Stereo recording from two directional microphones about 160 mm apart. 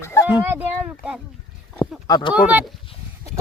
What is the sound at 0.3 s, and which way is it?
Speech, 10° right (ahead or behind).